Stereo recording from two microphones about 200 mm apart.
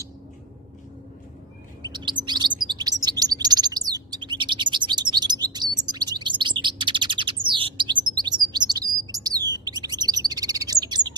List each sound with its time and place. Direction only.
1.8 s chirp: 20° right (ahead or behind)